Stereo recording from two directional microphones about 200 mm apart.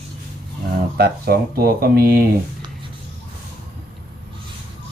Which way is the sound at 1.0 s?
50° right (ahead or behind).